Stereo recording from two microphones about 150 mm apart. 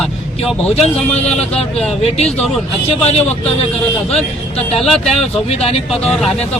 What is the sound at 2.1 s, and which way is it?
A man's voice, 45° left (ahead or behind).